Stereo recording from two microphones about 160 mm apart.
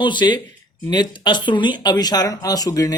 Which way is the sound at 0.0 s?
30° left (ahead or behind).